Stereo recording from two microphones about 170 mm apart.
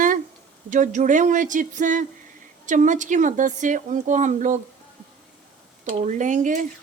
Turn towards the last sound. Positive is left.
turn(degrees=-50)  # may be behind; listen again after turning